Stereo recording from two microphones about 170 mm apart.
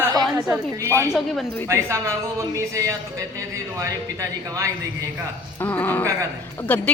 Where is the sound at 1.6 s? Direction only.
15° right (ahead or behind).